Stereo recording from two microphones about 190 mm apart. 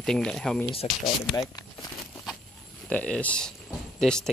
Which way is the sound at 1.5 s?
20° left (ahead or behind).